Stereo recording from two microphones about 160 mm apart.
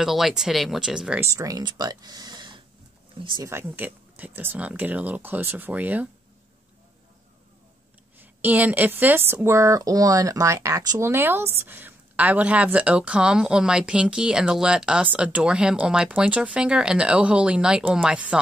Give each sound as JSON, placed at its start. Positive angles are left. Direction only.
{"t": 0.0, "sound": "speech", "side_deg": 0}
{"t": 1.3, "sound": "speech", "side_deg": -20}
{"t": 3.4, "sound": "speech", "side_deg": -15}
{"t": 8.2, "sound": "speech", "side_deg": -10}